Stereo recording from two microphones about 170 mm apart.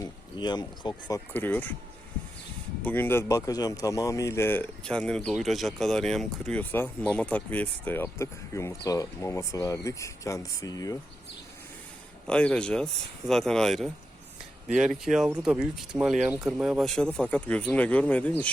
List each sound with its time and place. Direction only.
0.0 s speech: 25° left (ahead or behind)
1.3 s speech: 10° left (ahead or behind)
2.8 s speech: 10° left (ahead or behind)
12.3 s speech: 5° left (ahead or behind)